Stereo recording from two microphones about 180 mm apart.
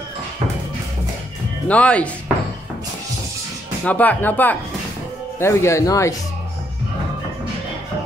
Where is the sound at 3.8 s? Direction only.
10° left (ahead or behind).